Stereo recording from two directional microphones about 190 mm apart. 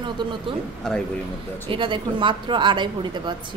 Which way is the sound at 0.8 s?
5° left (ahead or behind).